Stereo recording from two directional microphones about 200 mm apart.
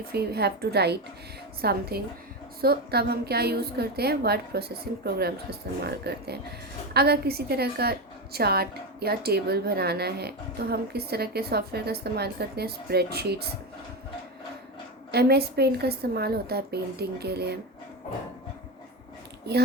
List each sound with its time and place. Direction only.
0.1 s a woman's voice: 55° right (ahead or behind)
15.1 s a woman's voice: 55° right (ahead or behind)